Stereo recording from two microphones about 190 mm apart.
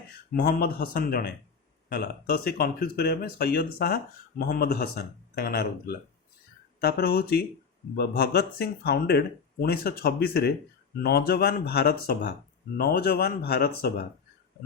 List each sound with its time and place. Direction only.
0.3 s speech: 50° left (ahead or behind)